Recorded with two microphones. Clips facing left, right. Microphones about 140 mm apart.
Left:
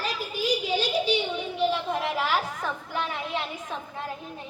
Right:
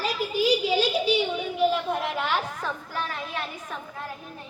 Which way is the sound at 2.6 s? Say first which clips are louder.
Left 1 dB; 20° left (ahead or behind).